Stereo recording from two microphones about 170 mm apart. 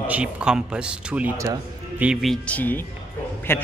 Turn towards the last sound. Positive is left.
turn(degrees=15)  # may be behind; listen again after turning